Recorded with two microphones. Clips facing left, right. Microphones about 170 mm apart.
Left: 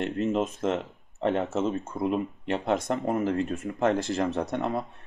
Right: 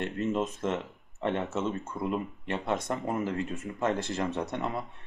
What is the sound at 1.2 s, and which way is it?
Speech, 40° left (ahead or behind).